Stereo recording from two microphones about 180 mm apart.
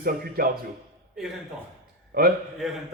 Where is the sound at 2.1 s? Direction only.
60° right (ahead or behind).